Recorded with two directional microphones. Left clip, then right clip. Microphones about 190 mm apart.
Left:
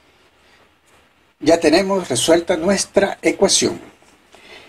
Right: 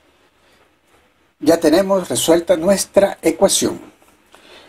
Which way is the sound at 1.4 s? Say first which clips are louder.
Even; 25° right (ahead or behind).